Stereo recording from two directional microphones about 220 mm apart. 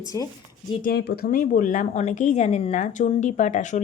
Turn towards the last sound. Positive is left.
turn(degrees=35)  # may be behind; listen again after turning